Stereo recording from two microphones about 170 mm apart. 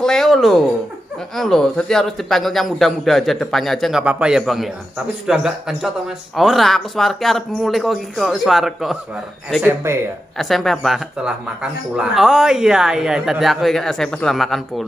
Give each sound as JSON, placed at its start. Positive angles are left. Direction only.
{"t": 0.0, "sound": "a sound", "side_deg": 0}
{"t": 1.3, "sound": "speech", "side_deg": 0}
{"t": 9.9, "sound": "speech", "side_deg": -15}
{"t": 10.3, "sound": "speech", "side_deg": 0}